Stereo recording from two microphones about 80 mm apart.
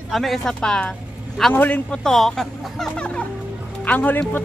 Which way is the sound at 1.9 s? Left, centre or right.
Centre.